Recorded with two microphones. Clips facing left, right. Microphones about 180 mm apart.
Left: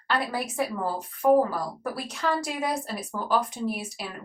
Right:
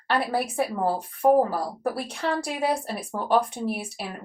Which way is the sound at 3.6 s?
55° right (ahead or behind).